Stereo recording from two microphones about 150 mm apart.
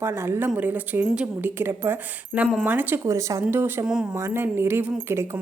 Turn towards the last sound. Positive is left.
turn(degrees=-15)  # may be behind; listen again after turning